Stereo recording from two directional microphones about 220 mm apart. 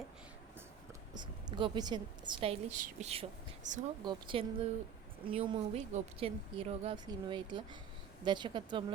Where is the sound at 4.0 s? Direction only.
20° right (ahead or behind).